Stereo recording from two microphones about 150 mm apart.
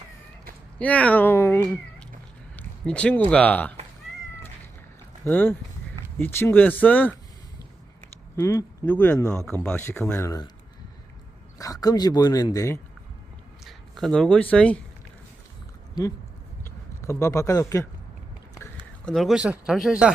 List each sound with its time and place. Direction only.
0.8 s speech: 10° left (ahead or behind)
5.2 s speech: 15° left (ahead or behind)
8.4 s speech: 20° left (ahead or behind)
8.9 s speech: 10° left (ahead or behind)
11.5 s speech: 25° left (ahead or behind)
13.7 s speech: centre (ahead or behind)
16.6 s speech: 20° left (ahead or behind)
19.0 s speech: centre (ahead or behind)